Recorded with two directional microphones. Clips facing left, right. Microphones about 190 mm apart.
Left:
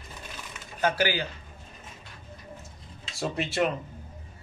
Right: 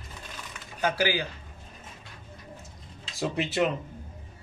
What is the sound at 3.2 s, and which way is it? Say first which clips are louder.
Speech: right 1 dB; 15° right (ahead or behind).